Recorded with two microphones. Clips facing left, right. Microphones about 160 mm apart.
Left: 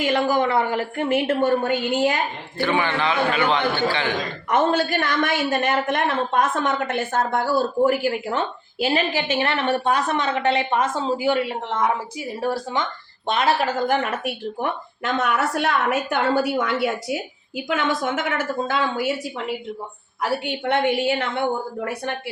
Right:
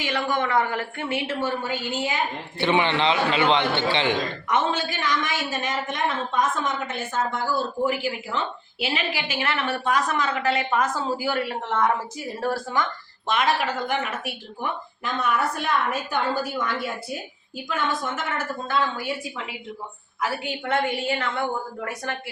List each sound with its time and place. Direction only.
0.0 s a woman's voice: 40° left (ahead or behind)
1.3 s a woman's voice: 55° left (ahead or behind)
2.6 s a man's voice: 20° right (ahead or behind)
4.4 s a woman's voice: 50° left (ahead or behind)
7.9 s a woman's voice: 50° left (ahead or behind); by 12.9 s 20° left (ahead or behind)
13.2 s speech: 35° left (ahead or behind); by 18.8 s 85° left
18.9 s a woman's voice: 5° left (ahead or behind)
20.7 s speech: 70° left (ahead or behind)